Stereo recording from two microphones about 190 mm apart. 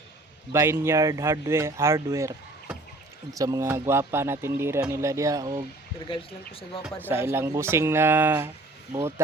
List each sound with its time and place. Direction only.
0.5 s speech: 15° right (ahead or behind)
6.1 s speech: 30° left (ahead or behind)
7.1 s speech: 10° right (ahead or behind)